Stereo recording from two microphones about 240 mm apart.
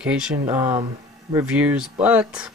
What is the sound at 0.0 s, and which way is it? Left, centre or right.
Speech, centre.